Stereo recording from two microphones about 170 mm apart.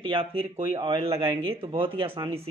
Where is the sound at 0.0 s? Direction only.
30° right (ahead or behind).